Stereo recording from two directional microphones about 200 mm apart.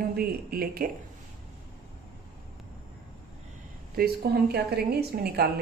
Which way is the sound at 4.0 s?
50° right (ahead or behind).